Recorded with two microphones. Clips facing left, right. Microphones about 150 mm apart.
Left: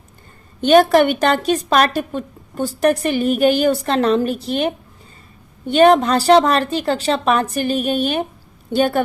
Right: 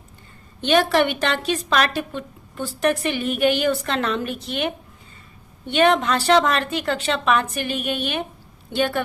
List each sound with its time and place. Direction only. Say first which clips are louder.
0.6 s a woman's voice: left 6 dB; 45° left (ahead or behind)